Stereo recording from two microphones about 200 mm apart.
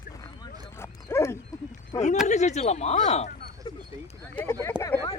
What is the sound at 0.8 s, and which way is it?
Dog, 15° left (ahead or behind).